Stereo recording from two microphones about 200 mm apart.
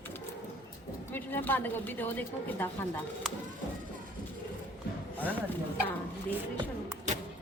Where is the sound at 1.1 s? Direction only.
10° left (ahead or behind).